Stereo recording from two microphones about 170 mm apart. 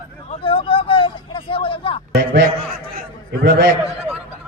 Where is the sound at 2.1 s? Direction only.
75° right (ahead or behind).